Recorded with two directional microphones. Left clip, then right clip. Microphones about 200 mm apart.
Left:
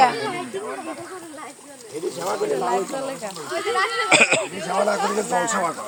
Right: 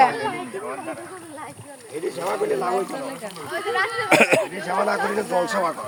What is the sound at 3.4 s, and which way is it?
Speech, 55° left (ahead or behind).